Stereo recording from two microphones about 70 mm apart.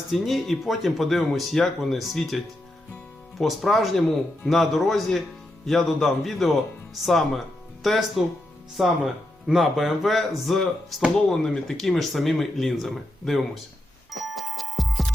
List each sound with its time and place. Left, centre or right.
0.1 s speech: centre
11.7 s speech: centre
14.1 s music: centre